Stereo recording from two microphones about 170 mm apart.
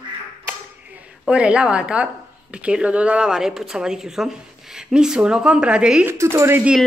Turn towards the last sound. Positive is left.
turn(degrees=-15)  # may be behind; listen again after turning